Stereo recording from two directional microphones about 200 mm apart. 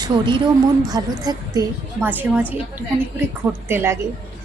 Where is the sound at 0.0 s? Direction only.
25° right (ahead or behind).